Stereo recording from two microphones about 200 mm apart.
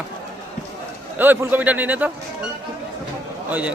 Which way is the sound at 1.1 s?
10° right (ahead or behind).